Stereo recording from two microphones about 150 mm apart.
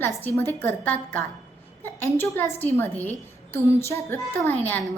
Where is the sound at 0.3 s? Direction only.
15° left (ahead or behind).